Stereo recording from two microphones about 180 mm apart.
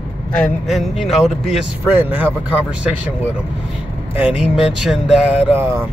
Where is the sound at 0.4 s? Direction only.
Centre (ahead or behind).